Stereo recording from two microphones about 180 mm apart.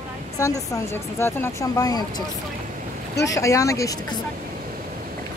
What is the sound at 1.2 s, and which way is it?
Speech, 15° left (ahead or behind).